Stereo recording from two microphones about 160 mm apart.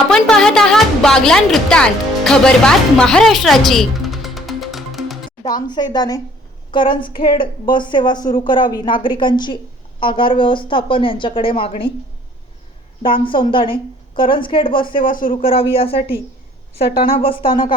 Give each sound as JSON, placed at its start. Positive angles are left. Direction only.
{"t": 0.1, "sound": "a woman's voice", "side_deg": 5}
{"t": 5.6, "sound": "a woman's voice", "side_deg": 25}
{"t": 13.0, "sound": "a woman's voice", "side_deg": 35}
{"t": 14.9, "sound": "speech", "side_deg": 60}
{"t": 15.4, "sound": "a woman's voice", "side_deg": 35}
{"t": 16.8, "sound": "speech", "side_deg": 65}
{"t": 17.2, "sound": "a woman's voice", "side_deg": 35}